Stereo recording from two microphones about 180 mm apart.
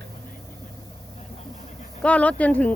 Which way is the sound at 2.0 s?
5° left (ahead or behind).